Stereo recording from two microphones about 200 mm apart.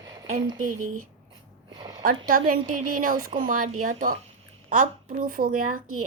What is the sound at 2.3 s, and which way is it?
A woman's voice, 45° right (ahead or behind).